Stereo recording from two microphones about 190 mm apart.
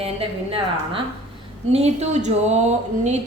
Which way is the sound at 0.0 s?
30° right (ahead or behind).